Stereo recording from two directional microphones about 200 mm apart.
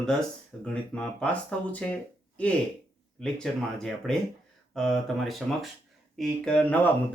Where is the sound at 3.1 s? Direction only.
5° left (ahead or behind).